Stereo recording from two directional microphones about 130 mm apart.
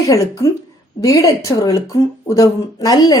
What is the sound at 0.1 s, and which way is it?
Speech, 25° left (ahead or behind).